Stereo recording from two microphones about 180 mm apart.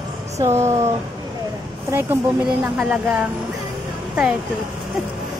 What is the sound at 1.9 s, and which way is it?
Speech, 10° right (ahead or behind).